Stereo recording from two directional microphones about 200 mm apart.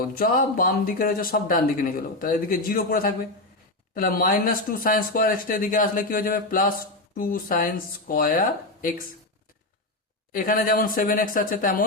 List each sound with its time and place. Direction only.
0.0 s speech: 45° left (ahead or behind)
10.3 s speech: 45° left (ahead or behind)